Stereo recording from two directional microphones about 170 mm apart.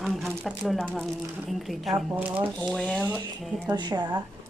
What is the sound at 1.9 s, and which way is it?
Speech, 10° right (ahead or behind).